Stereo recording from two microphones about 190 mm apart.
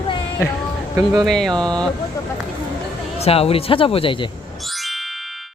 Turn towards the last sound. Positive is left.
turn(degrees=25)  # may be behind; listen again after turning